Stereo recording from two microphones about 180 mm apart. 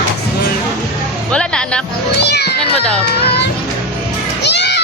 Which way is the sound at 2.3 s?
65° left (ahead or behind).